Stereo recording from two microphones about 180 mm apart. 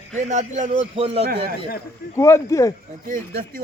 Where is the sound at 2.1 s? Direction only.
15° left (ahead or behind).